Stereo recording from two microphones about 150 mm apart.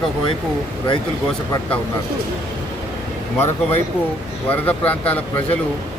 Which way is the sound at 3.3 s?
15° left (ahead or behind).